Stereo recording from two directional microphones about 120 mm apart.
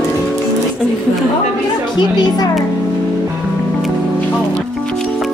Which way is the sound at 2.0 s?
35° left (ahead or behind).